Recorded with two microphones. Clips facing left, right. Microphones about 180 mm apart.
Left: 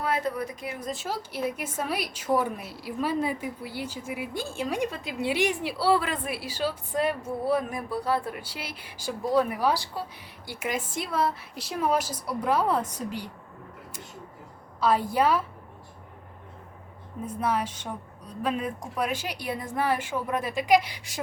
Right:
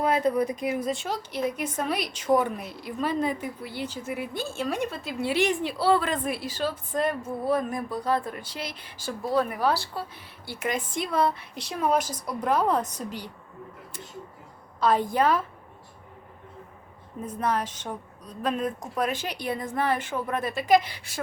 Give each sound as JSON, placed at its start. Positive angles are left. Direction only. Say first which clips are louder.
{"t": 0.0, "sound": "speech", "louder": "right 5 dB", "side_deg": -20}
{"t": 0.9, "sound": "a woman's voice", "louder": "right 3 dB", "side_deg": 5}
{"t": 14.8, "sound": "a woman's voice", "louder": "right 1 dB", "side_deg": 5}
{"t": 17.2, "sound": "a woman's voice", "louder": "even", "side_deg": 10}